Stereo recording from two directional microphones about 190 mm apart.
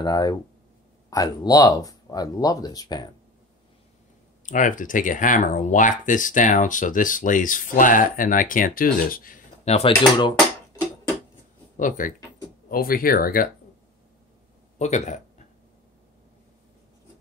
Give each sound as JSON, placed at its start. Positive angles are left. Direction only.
{"t": 0.0, "sound": "speech", "side_deg": 20}
{"t": 4.5, "sound": "speech", "side_deg": 45}
{"t": 9.7, "sound": "speech", "side_deg": 30}
{"t": 11.7, "sound": "speech", "side_deg": 45}
{"t": 14.8, "sound": "speech", "side_deg": 35}